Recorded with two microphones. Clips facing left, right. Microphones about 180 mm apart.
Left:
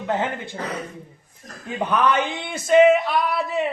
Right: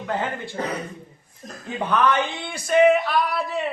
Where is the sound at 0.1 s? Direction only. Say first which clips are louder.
Left 2 dB; 20° left (ahead or behind).